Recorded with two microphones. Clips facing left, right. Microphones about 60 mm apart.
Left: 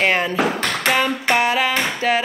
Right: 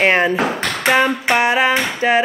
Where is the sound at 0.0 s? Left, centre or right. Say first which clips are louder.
Right 4 dB; right.